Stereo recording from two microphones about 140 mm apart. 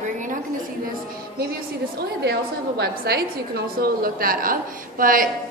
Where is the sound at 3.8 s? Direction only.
90° right.